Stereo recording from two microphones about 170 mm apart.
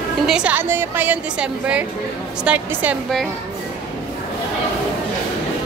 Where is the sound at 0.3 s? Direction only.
5° right (ahead or behind).